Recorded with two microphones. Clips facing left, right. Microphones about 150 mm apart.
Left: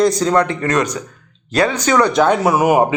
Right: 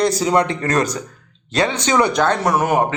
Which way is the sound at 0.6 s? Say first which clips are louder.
Left 1 dB; 35° right (ahead or behind).